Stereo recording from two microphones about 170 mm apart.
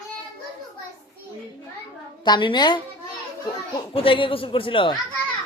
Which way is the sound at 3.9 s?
35° left (ahead or behind).